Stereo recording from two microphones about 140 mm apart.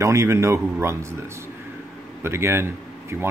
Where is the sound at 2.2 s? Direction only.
20° right (ahead or behind).